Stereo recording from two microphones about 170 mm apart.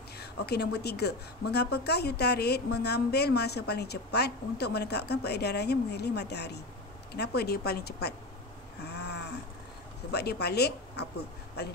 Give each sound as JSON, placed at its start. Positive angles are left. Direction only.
{"t": 0.2, "sound": "a woman's voice", "side_deg": 75}
{"t": 8.8, "sound": "a sound", "side_deg": 80}
{"t": 10.1, "sound": "a woman's voice", "side_deg": 75}